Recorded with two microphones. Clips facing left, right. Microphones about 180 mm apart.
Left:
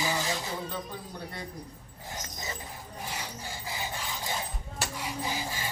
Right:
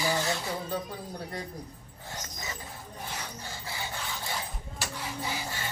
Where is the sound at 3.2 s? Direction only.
15° left (ahead or behind).